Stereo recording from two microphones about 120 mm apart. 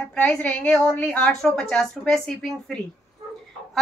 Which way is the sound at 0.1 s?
10° left (ahead or behind).